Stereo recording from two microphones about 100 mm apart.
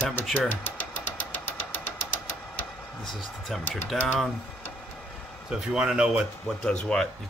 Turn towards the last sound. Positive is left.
turn(degrees=5)  # may be behind; listen again after turning